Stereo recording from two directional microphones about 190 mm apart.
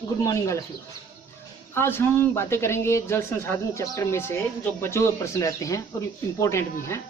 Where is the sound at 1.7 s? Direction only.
10° left (ahead or behind).